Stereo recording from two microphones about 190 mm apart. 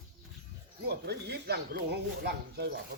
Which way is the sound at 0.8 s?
60° right (ahead or behind).